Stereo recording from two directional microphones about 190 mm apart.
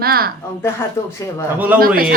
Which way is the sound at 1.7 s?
50° right (ahead or behind).